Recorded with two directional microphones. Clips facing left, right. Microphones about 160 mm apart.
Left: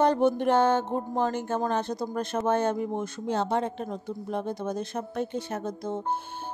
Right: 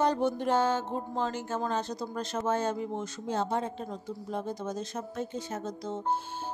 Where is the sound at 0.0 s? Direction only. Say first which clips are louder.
Left 5 dB; 60° left (ahead or behind).